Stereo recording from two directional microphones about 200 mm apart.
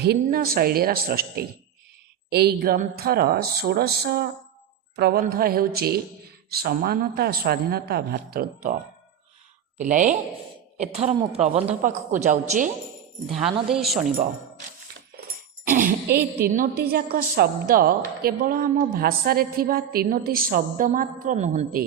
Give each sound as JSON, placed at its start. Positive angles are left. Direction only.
{"t": 0.0, "sound": "a woman's voice", "side_deg": -50}
{"t": 13.7, "sound": "a woman's voice", "side_deg": 0}
{"t": 15.7, "sound": "a woman's voice", "side_deg": -45}